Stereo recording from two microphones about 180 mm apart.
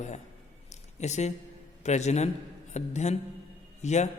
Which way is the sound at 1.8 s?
40° left (ahead or behind).